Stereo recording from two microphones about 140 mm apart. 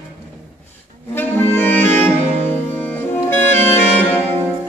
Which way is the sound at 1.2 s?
15° left (ahead or behind).